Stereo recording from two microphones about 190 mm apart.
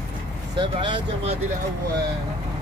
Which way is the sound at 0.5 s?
25° right (ahead or behind).